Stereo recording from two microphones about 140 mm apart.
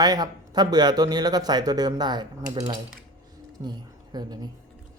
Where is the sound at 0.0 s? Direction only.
30° right (ahead or behind).